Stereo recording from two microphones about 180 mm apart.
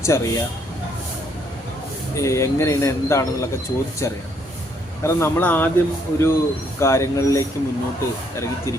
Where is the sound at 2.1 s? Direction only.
15° left (ahead or behind).